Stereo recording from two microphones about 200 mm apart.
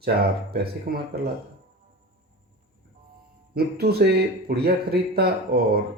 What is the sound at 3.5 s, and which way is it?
Speech, 50° right (ahead or behind).